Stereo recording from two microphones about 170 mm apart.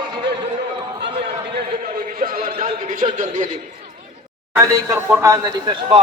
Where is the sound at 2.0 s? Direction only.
55° right (ahead or behind).